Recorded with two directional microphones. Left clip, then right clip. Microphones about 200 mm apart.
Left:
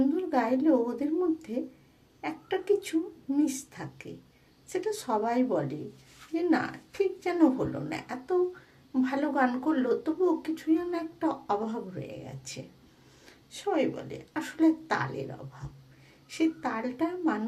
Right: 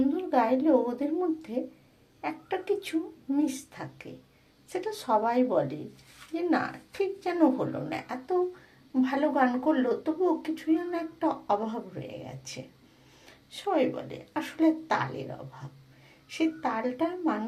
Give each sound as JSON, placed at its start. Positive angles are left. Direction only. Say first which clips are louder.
{"t": 0.1, "sound": "a woman's voice", "louder": "right 2 dB", "side_deg": 15}
{"t": 16.3, "sound": "speech", "louder": "right 1 dB", "side_deg": 15}